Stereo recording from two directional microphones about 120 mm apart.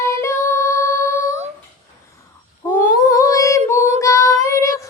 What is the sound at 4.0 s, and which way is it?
Child singing, 25° left (ahead or behind).